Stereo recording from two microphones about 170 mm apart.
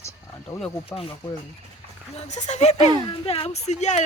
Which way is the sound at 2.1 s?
45° left (ahead or behind).